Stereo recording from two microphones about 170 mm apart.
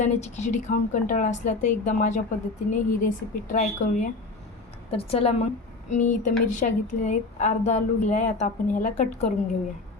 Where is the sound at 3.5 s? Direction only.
55° left (ahead or behind).